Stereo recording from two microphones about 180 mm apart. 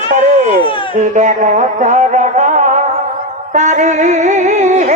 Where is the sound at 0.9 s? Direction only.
40° right (ahead or behind).